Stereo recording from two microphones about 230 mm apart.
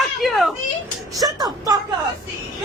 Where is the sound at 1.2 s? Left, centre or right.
Centre.